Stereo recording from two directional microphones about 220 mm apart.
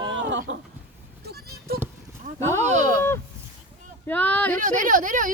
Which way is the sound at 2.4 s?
10° left (ahead or behind).